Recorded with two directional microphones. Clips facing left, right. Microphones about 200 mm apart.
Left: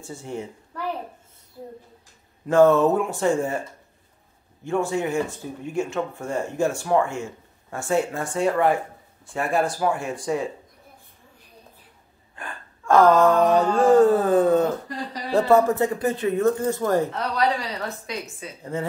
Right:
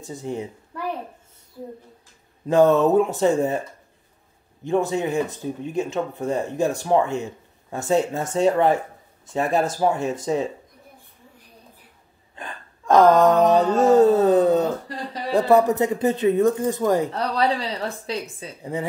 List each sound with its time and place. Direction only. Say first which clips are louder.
0.0 s speech: right 3 dB; 20° right (ahead or behind)
2.4 s speech: even; 20° right (ahead or behind)
4.6 s speech: right 2 dB; 20° right (ahead or behind)
12.4 s a sound: right 1 dB; 20° right (ahead or behind)
15.3 s speech: right 1 dB; 20° right (ahead or behind)
17.1 s a woman's voice: right 1 dB; 30° right (ahead or behind)
18.6 s speech: right 1 dB; 15° right (ahead or behind)